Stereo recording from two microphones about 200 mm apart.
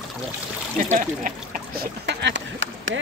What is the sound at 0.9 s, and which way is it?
Speech, 40° right (ahead or behind).